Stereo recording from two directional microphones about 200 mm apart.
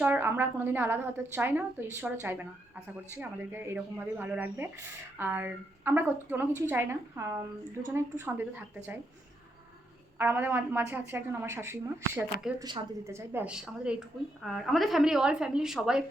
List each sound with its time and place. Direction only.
0.0 s a woman's voice: 10° right (ahead or behind)
10.2 s a woman's voice: 10° right (ahead or behind)